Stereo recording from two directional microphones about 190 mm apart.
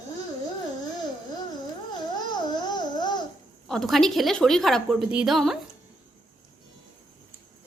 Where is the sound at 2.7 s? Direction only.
20° left (ahead or behind).